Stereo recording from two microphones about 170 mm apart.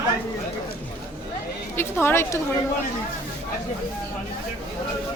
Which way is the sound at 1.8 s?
15° left (ahead or behind).